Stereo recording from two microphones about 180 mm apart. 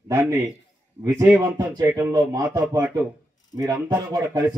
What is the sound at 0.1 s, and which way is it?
A man's voice, 15° right (ahead or behind).